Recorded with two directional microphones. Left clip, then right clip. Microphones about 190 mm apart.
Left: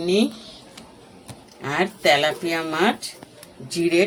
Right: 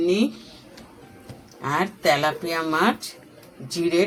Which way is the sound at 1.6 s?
5° right (ahead or behind).